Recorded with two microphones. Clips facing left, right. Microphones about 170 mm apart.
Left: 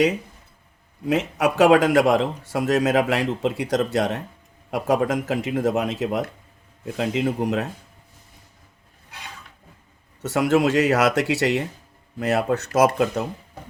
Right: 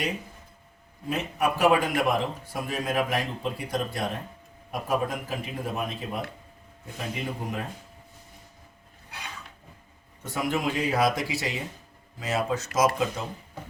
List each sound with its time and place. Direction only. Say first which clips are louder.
1.0 s speech: left 6 dB; 90° left
10.2 s speech: left 9 dB; 80° left